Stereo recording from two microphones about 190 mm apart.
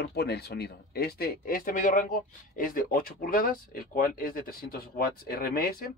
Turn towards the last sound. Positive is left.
turn(degrees=50)  # may be behind; listen again after turning